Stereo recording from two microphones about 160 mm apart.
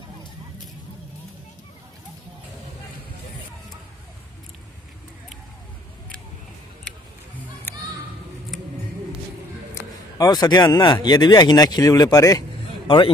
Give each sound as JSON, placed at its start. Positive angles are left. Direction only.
{"t": 7.7, "sound": "children playing", "side_deg": 15}
{"t": 9.8, "sound": "speech", "side_deg": 20}